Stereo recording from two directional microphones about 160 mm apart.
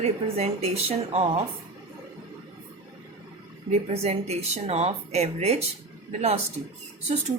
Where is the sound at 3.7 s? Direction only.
40° right (ahead or behind).